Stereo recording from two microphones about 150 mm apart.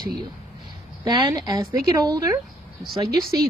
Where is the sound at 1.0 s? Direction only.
25° right (ahead or behind).